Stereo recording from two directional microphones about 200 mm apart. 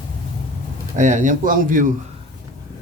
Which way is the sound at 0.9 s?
40° right (ahead or behind).